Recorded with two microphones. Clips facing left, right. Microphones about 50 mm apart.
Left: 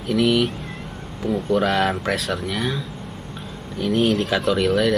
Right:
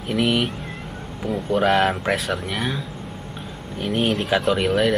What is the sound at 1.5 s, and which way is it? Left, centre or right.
Speech, centre.